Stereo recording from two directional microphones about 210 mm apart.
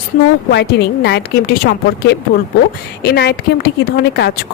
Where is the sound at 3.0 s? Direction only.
50° left (ahead or behind).